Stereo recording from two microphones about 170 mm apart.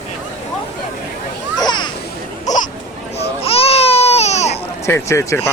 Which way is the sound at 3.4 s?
35° left (ahead or behind).